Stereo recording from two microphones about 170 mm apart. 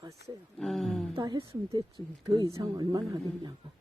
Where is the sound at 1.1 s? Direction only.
30° right (ahead or behind).